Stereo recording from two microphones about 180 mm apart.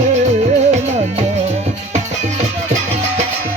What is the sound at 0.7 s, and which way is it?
Music, 40° right (ahead or behind).